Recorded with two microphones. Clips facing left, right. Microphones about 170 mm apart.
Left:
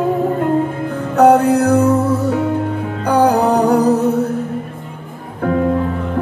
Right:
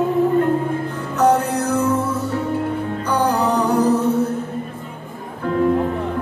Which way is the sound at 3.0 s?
65° left (ahead or behind).